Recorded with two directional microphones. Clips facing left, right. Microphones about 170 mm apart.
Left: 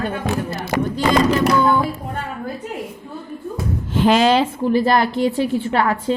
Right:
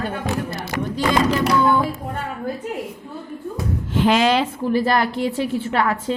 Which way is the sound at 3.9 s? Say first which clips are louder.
Left 2 dB; 35° left (ahead or behind).